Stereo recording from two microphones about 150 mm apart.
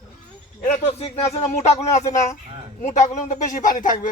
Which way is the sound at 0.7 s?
45° left (ahead or behind).